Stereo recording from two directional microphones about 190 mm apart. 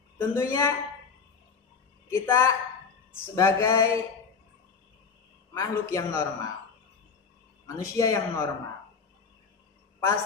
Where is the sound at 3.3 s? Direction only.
15° left (ahead or behind).